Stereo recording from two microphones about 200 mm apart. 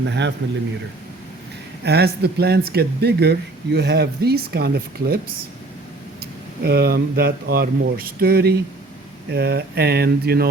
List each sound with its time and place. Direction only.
0.0 s speech: 60° right (ahead or behind)
1.8 s speech: 55° right (ahead or behind)
6.6 s speech: 55° right (ahead or behind)